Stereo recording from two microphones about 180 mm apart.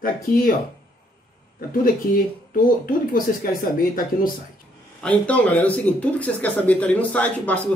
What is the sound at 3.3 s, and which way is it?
Speech, 55° left (ahead or behind).